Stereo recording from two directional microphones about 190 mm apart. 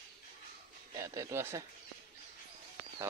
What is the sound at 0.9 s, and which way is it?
Speech, 15° right (ahead or behind).